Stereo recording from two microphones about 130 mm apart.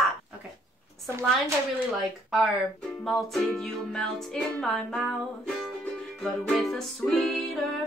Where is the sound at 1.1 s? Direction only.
20° right (ahead or behind).